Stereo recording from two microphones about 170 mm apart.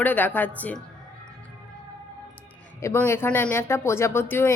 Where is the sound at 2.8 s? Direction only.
15° left (ahead or behind).